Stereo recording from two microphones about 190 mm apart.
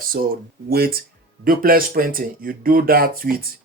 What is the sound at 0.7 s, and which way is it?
Speech, 55° right (ahead or behind).